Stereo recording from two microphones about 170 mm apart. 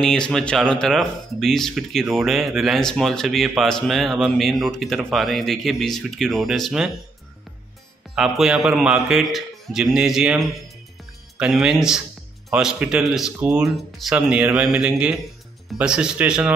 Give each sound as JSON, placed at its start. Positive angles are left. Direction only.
{"t": 0.0, "sound": "speech", "side_deg": 5}
{"t": 8.1, "sound": "speech", "side_deg": -5}